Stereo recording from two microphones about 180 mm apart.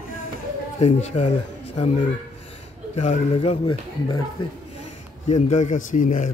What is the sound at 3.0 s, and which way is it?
Speech, 35° left (ahead or behind).